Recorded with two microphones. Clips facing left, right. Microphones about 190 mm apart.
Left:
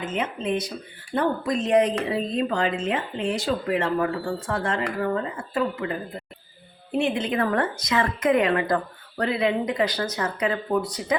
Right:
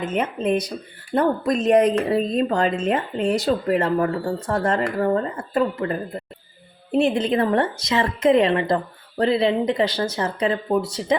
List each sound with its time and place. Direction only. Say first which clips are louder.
0.2 s speech: right 5 dB; 40° right (ahead or behind); by 11.2 s 25° right (ahead or behind)